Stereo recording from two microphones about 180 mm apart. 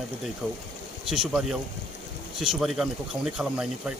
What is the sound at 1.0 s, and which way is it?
Speech, centre (ahead or behind).